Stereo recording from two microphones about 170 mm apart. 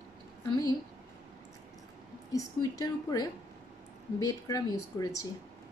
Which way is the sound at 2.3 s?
20° left (ahead or behind).